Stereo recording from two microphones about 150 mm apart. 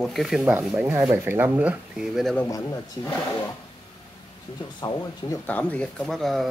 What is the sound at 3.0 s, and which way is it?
Speech, 30° left (ahead or behind).